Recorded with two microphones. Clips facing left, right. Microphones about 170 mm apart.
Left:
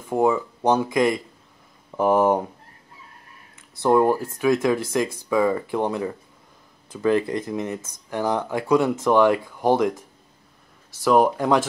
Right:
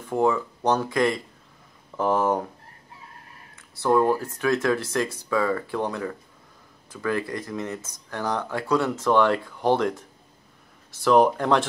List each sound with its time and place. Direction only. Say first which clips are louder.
0.1 s speech: left 2 dB; 15° left (ahead or behind)
3.8 s speech: left 2 dB; 15° left (ahead or behind)
11.1 s speech: left 1 dB; 10° left (ahead or behind)